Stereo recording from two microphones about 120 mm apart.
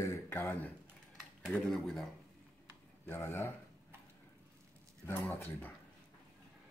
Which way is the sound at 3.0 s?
20° left (ahead or behind).